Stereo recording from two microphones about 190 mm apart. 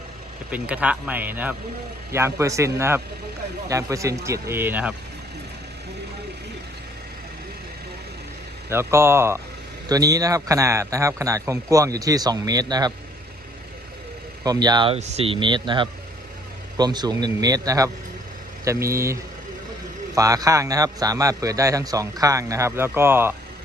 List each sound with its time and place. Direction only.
0.5 s a man's voice: 5° right (ahead or behind)
8.7 s a man's voice: 15° right (ahead or behind)
14.4 s a man's voice: 20° right (ahead or behind)
14.9 s a man's voice: 35° right (ahead or behind); by 19.1 s 15° right (ahead or behind)
20.1 s a man's voice: 20° right (ahead or behind)